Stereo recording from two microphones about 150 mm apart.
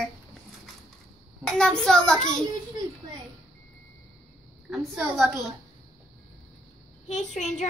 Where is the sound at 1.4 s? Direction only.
5° left (ahead or behind).